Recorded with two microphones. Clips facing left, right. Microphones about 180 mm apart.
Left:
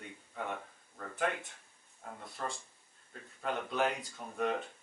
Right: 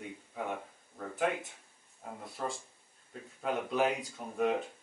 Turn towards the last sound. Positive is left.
turn(degrees=-5)  # may be behind; listen again after turning